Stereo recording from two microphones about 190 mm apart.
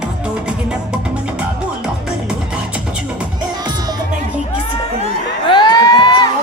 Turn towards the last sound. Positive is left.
turn(degrees=25)  # may be behind; listen again after turning